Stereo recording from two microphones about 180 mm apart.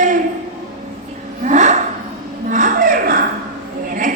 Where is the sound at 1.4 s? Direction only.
40° right (ahead or behind).